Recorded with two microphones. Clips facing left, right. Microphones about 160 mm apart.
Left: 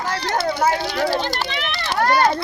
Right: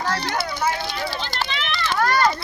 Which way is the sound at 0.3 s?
50° left (ahead or behind).